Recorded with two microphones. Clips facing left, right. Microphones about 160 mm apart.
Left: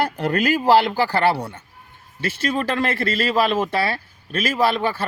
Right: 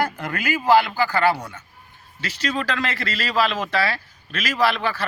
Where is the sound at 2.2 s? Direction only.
50° left (ahead or behind).